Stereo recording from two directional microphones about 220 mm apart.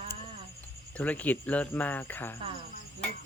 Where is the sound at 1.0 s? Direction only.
5° left (ahead or behind).